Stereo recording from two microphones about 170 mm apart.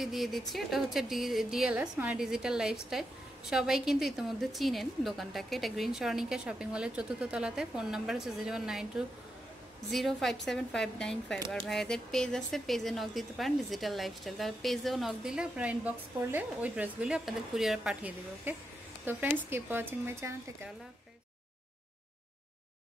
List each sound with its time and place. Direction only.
0.0 s speech: centre (ahead or behind)